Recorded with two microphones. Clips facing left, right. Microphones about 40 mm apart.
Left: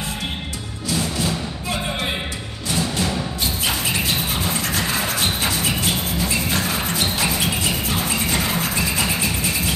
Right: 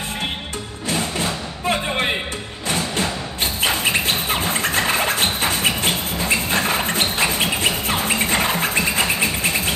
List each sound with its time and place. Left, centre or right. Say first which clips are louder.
0.8 s music: even; right